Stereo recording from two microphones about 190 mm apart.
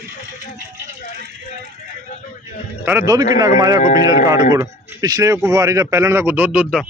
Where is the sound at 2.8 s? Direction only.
10° right (ahead or behind).